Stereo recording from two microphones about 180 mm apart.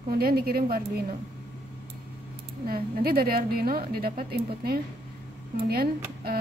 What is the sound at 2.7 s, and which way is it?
Speech, 55° right (ahead or behind).